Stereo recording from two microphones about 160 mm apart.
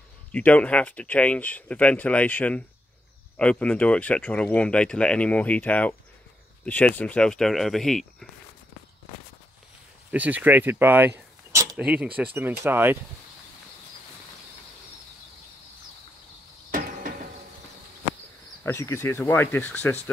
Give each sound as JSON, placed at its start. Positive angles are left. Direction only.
{"t": 0.3, "sound": "speech", "side_deg": 10}
{"t": 10.1, "sound": "speech", "side_deg": -10}
{"t": 16.7, "sound": "a sound", "side_deg": -65}
{"t": 18.6, "sound": "speech", "side_deg": 15}